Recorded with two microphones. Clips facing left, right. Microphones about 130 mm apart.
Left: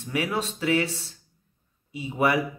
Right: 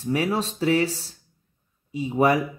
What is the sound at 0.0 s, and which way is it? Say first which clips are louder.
Speech: right 4 dB; 35° right (ahead or behind).